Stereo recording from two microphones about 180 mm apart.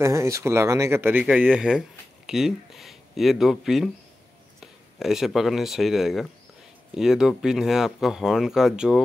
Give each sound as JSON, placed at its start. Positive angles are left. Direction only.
{"t": 0.0, "sound": "speech", "side_deg": -15}